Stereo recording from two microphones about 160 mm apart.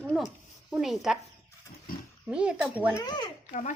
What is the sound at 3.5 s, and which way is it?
Speech, 50° left (ahead or behind).